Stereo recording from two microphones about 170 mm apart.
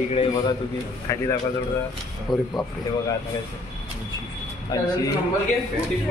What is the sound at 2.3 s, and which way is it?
Speech, 25° left (ahead or behind).